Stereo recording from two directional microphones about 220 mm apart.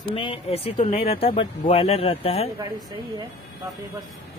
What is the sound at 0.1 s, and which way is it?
Speech, 25° left (ahead or behind).